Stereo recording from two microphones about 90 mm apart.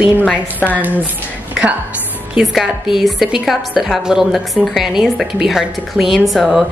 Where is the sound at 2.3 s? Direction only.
5° right (ahead or behind).